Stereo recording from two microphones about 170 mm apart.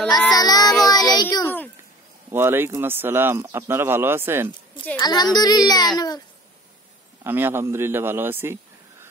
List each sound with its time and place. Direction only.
0.1 s child singing: 25° left (ahead or behind)
2.3 s a man's voice: 15° right (ahead or behind)
5.0 s speech: 25° left (ahead or behind)
7.2 s a man's voice: 10° right (ahead or behind)